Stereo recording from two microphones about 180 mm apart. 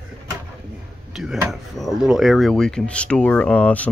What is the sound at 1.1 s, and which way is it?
Speech, 5° right (ahead or behind).